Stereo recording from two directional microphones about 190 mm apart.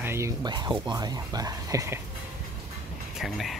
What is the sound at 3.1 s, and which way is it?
Speech, centre (ahead or behind).